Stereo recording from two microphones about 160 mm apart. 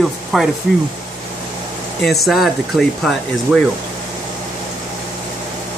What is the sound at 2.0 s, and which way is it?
Speech, centre (ahead or behind).